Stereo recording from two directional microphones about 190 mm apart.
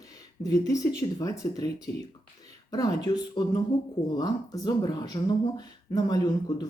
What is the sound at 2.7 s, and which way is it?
Speech, 20° left (ahead or behind).